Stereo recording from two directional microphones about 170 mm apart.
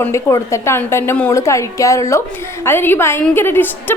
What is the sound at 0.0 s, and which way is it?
A woman's voice, 15° left (ahead or behind).